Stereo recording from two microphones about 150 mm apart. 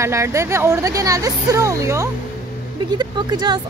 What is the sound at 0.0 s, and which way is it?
Speech, 20° right (ahead or behind).